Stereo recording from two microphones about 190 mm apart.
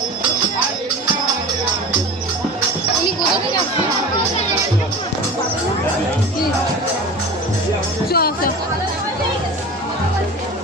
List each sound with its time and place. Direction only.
8.1 s music: 55° left (ahead or behind)